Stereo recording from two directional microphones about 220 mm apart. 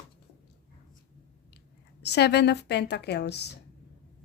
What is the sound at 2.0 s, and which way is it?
Speech, 50° left (ahead or behind).